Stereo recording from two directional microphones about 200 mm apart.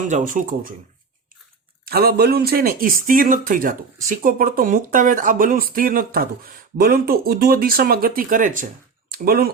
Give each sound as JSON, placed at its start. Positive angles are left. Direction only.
{"t": 0.1, "sound": "speech", "side_deg": -40}
{"t": 1.8, "sound": "speech", "side_deg": -50}